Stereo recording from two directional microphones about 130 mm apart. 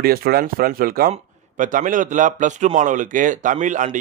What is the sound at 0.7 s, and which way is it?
A man's voice, 90° right.